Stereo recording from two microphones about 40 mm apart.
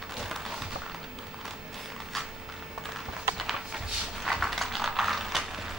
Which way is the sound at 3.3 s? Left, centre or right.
Centre.